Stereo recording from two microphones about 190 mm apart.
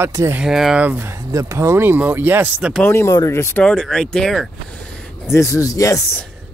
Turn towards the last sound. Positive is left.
turn(degrees=15)  # may be behind; listen again after turning